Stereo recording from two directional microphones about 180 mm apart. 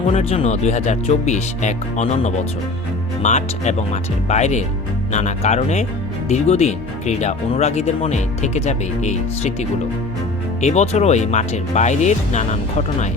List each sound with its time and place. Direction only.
0.1 s speech: 35° left (ahead or behind)